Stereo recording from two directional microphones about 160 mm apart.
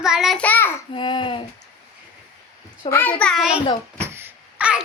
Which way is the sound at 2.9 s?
10° left (ahead or behind).